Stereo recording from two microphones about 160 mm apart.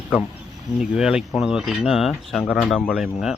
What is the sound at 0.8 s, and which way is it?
Speech, 5° right (ahead or behind).